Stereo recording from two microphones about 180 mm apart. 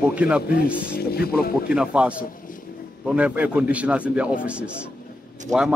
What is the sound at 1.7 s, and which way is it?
A man's voice, 5° right (ahead or behind).